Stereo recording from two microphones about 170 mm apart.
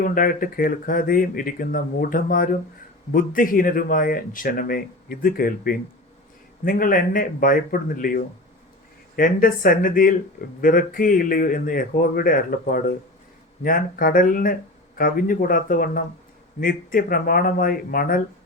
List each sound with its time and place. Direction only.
0.0 s speech: 55° left (ahead or behind)